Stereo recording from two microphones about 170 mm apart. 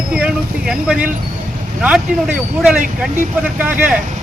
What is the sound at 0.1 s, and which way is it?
Speech, 5° right (ahead or behind).